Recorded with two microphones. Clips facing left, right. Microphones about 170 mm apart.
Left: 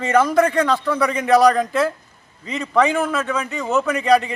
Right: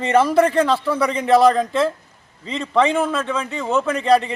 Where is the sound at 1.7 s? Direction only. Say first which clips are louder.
Right 1 dB; 5° left (ahead or behind).